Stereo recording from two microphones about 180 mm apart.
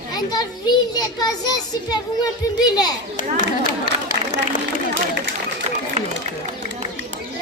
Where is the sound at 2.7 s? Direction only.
20° left (ahead or behind).